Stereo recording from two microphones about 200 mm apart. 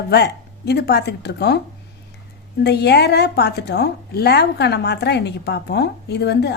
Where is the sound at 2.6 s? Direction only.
55° left (ahead or behind).